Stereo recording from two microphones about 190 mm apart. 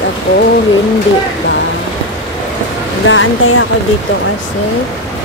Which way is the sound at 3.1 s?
90° left.